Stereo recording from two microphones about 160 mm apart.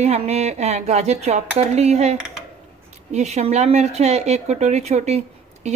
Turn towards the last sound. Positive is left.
turn(degrees=-45)  # may be behind; listen again after turning